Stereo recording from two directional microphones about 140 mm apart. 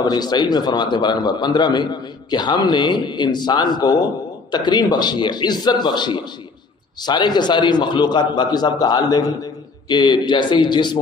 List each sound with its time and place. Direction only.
0.0 s a man's voice: 30° left (ahead or behind)